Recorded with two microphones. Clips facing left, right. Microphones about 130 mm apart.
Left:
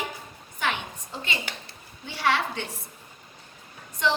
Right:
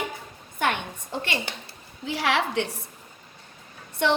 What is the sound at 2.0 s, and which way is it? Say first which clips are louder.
Speech: right 1 dB; 90° right.